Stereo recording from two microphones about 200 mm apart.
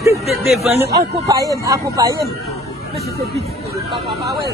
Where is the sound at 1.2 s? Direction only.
15° right (ahead or behind).